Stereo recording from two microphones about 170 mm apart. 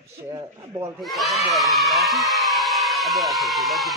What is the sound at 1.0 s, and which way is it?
Speech, centre (ahead or behind).